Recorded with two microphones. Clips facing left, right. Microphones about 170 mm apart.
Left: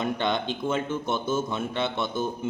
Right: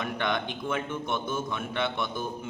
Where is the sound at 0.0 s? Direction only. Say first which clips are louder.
Left 3 dB; 25° left (ahead or behind).